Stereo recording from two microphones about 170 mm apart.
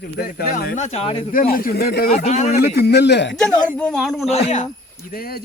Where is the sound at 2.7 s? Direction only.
75° left (ahead or behind); by 3.3 s 90° left.